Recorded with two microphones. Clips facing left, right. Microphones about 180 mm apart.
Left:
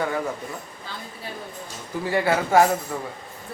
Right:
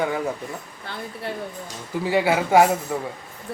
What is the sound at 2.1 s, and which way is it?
A man's voice, 15° right (ahead or behind).